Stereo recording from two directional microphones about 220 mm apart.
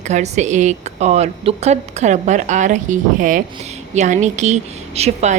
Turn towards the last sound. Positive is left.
turn(degrees=-30)  # may be behind; listen again after turning